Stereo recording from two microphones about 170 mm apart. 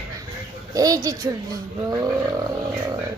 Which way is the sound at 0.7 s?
20° right (ahead or behind).